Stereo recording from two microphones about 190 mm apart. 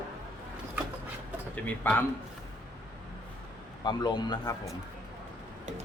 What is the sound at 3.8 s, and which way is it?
Speech, 20° left (ahead or behind).